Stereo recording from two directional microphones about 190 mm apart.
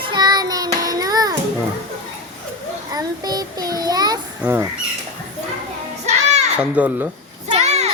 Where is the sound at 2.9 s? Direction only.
20° right (ahead or behind).